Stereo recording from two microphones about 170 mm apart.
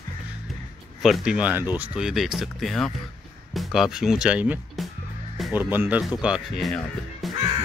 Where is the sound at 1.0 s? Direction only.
Centre (ahead or behind).